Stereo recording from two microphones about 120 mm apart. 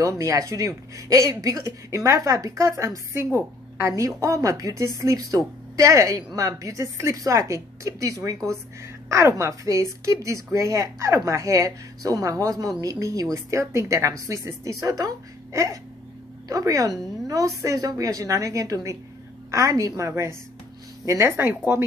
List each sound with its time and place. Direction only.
0.0 s speech: 25° right (ahead or behind)